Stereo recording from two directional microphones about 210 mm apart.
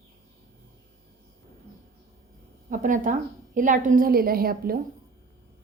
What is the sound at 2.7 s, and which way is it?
A woman's voice, 40° right (ahead or behind).